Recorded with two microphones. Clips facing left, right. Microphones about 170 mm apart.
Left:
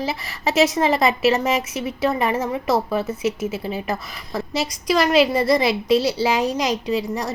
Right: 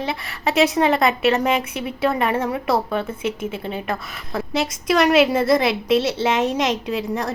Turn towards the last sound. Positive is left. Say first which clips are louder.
# left 1 dB
turn(degrees=0)  # may be behind; listen again after turning